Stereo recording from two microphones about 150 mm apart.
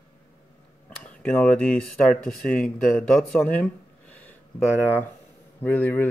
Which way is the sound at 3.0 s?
5° left (ahead or behind).